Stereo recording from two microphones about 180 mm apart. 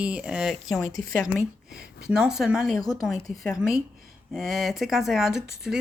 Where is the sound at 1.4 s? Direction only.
55° right (ahead or behind).